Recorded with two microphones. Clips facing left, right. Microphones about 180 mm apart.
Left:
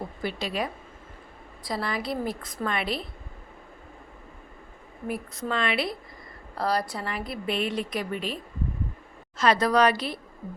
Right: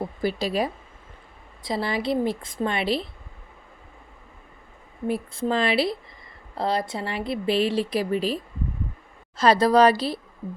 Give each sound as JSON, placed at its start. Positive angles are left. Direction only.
{"t": 0.2, "sound": "speech", "side_deg": -35}
{"t": 1.6, "sound": "a woman's voice", "side_deg": -25}
{"t": 5.0, "sound": "a woman's voice", "side_deg": -30}
{"t": 9.4, "sound": "speech", "side_deg": -30}